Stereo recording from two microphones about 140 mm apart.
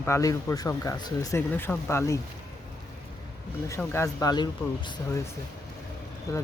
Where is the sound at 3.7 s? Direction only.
20° left (ahead or behind).